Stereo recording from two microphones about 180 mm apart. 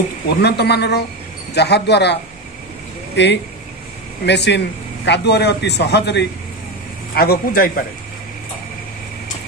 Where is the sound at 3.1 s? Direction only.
75° left (ahead or behind); by 7.8 s 55° left (ahead or behind).